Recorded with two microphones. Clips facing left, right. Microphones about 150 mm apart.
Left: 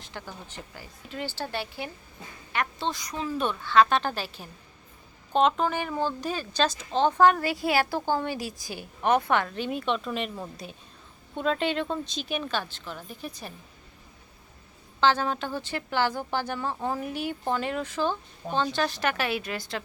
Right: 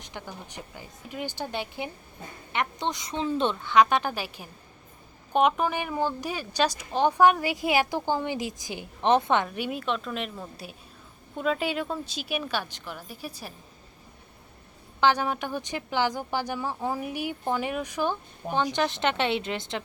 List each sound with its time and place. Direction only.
0.0 s speech: 15° right (ahead or behind)
15.0 s speech: 15° right (ahead or behind)